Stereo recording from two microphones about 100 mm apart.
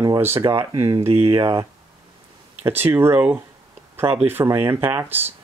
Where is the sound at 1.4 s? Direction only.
45° right (ahead or behind).